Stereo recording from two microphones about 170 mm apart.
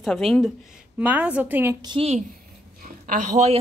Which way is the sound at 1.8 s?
25° right (ahead or behind).